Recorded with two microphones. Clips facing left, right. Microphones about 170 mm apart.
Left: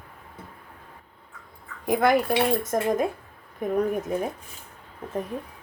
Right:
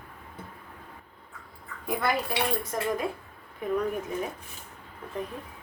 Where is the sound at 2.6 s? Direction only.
45° left (ahead or behind).